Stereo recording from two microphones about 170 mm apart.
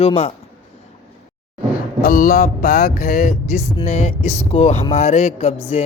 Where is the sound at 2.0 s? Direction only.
55° left (ahead or behind).